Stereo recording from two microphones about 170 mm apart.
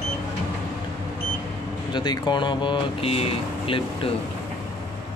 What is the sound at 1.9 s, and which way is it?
Speech, 25° left (ahead or behind).